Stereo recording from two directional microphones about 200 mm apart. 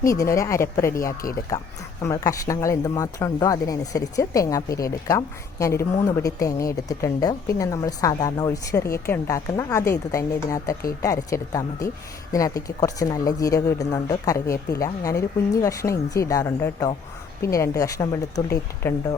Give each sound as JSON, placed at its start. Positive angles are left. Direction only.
{"t": 0.1, "sound": "speech", "side_deg": 15}